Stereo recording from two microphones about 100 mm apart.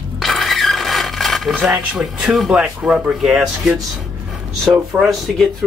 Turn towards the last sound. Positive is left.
turn(degrees=0)  # may be behind; listen again after turning